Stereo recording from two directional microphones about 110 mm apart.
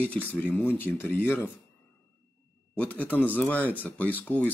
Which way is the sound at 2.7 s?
15° left (ahead or behind).